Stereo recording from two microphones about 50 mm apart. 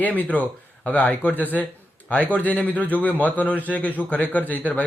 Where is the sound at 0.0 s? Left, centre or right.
Left.